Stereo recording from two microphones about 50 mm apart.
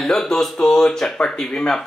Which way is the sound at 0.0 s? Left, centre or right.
Centre.